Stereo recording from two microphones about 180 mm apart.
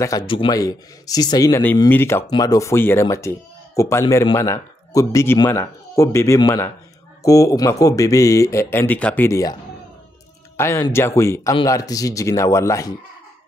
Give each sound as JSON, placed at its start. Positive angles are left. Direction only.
{"t": 0.3, "sound": "speech", "side_deg": 25}
{"t": 10.6, "sound": "speech", "side_deg": 15}